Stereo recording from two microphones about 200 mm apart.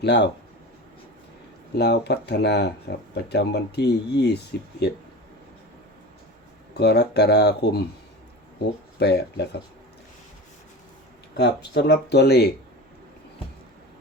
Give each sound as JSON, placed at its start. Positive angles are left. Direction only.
{"t": 0.0, "sound": "speech", "side_deg": 60}
{"t": 1.7, "sound": "speech", "side_deg": 55}
{"t": 6.7, "sound": "speech", "side_deg": 55}
{"t": 9.0, "sound": "speech", "side_deg": 55}
{"t": 11.3, "sound": "speech", "side_deg": 55}